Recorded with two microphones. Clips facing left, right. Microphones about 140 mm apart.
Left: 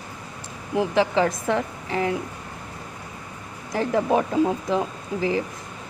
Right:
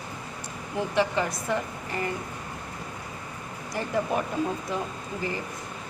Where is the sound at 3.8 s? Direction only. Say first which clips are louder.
Left 6 dB; 90° left.